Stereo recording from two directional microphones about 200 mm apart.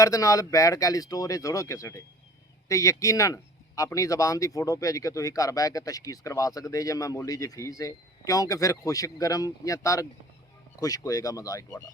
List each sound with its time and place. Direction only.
0.0 s speech: 15° left (ahead or behind)